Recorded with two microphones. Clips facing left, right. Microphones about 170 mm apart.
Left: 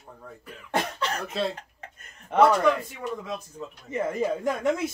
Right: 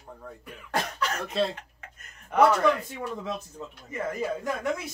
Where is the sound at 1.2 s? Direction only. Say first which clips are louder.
Right 3 dB; centre (ahead or behind).